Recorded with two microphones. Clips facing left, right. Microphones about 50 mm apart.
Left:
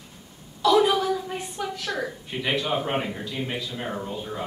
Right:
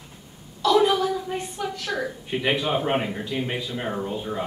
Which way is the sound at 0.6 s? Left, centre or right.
Centre.